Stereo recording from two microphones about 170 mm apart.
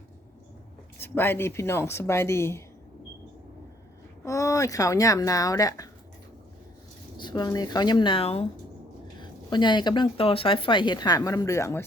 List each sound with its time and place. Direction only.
0.9 s speech: 15° left (ahead or behind)
4.2 s speech: 15° left (ahead or behind)
7.2 s speech: 25° left (ahead or behind)